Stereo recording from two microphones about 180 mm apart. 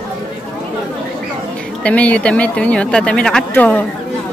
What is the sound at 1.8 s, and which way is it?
Speech, 5° left (ahead or behind).